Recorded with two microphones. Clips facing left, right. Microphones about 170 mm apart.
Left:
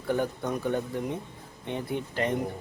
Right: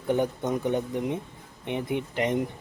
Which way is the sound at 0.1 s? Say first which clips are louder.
Right 3 dB; 20° right (ahead or behind).